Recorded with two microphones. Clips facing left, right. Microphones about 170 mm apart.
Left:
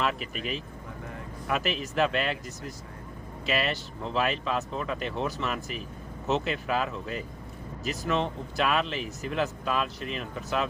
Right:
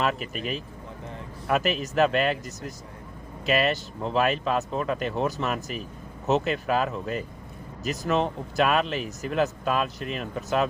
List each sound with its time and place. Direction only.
0.0 s speech: 45° right (ahead or behind)
3.4 s speech: 45° right (ahead or behind)